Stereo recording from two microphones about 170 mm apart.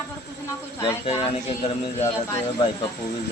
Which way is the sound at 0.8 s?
30° left (ahead or behind).